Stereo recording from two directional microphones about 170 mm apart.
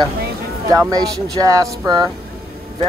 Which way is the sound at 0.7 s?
20° right (ahead or behind).